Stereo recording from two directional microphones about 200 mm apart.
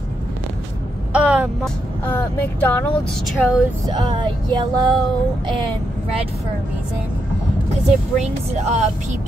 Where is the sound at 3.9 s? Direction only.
25° right (ahead or behind).